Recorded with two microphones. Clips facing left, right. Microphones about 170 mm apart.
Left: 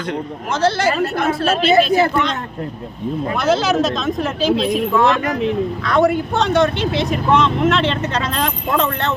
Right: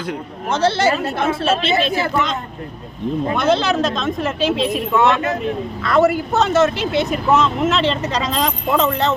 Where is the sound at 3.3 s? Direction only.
Centre (ahead or behind).